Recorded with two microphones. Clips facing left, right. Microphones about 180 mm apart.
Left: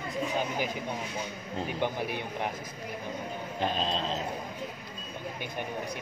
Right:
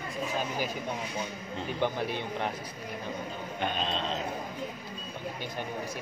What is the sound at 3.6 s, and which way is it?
Speech, 35° left (ahead or behind).